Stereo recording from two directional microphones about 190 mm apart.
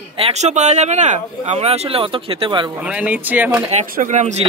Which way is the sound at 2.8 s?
5° right (ahead or behind).